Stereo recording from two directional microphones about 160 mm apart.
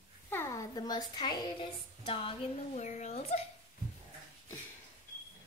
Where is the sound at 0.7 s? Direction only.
25° left (ahead or behind).